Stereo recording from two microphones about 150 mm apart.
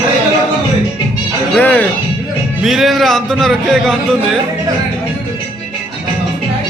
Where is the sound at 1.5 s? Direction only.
10° left (ahead or behind).